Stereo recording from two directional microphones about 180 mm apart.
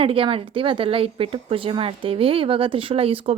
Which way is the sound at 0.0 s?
30° right (ahead or behind).